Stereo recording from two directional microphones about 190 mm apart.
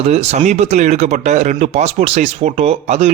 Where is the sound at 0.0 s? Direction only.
35° right (ahead or behind).